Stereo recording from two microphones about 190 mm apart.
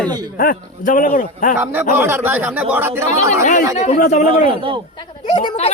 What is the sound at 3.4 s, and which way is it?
A man's voice, 45° left (ahead or behind).